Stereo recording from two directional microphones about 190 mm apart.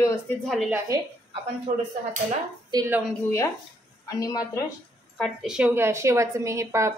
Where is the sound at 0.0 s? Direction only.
15° left (ahead or behind).